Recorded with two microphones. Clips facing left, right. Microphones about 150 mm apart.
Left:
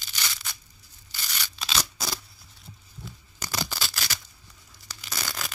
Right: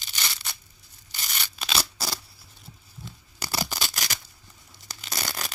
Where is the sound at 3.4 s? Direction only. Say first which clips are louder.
Right 2 dB; 10° right (ahead or behind).